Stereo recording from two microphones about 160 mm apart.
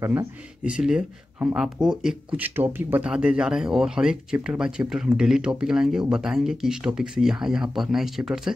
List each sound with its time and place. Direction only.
0.0 s speech: 15° right (ahead or behind)
0.7 s speech: 5° right (ahead or behind)